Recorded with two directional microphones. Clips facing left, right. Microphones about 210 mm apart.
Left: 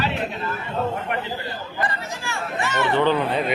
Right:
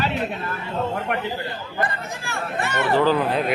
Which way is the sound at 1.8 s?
55° right (ahead or behind).